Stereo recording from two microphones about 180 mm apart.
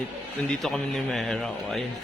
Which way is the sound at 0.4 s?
Centre (ahead or behind).